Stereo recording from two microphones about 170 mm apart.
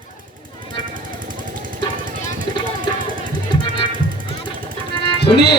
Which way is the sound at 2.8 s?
55° right (ahead or behind).